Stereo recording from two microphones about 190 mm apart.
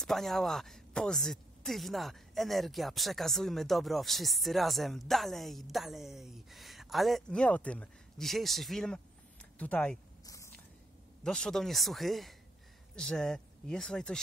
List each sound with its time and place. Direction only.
0.0 s speech: centre (ahead or behind)
10.2 s biting: 15° left (ahead or behind)
11.2 s speech: centre (ahead or behind)